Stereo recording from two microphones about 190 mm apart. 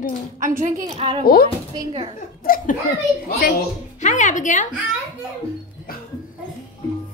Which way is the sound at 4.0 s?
40° left (ahead or behind).